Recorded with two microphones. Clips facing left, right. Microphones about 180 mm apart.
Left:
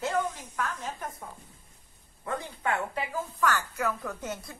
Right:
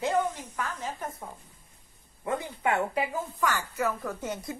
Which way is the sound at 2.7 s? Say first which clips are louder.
Right 4 dB; 10° right (ahead or behind).